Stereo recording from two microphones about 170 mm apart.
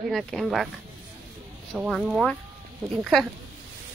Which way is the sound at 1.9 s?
5° left (ahead or behind).